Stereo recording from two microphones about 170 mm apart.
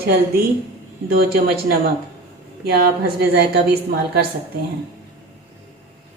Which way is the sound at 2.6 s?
65° right (ahead or behind).